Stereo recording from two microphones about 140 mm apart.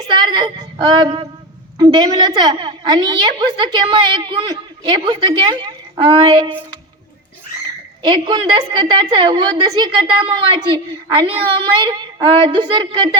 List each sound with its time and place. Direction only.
0.3 s a woman's voice: 35° right (ahead or behind)
8.0 s a woman's voice: 35° right (ahead or behind)